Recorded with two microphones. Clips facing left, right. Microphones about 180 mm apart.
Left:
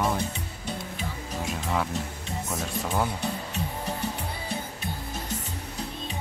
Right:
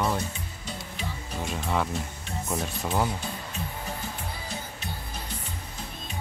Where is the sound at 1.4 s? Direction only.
Centre (ahead or behind).